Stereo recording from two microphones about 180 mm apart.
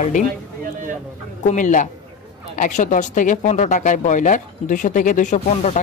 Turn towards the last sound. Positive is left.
turn(degrees=40)  # may be behind; listen again after turning